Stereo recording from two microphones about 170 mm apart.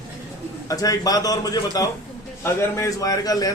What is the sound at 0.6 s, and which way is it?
Speech, 20° left (ahead or behind).